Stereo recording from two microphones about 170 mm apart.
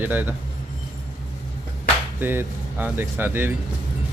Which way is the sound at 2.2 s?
10° right (ahead or behind).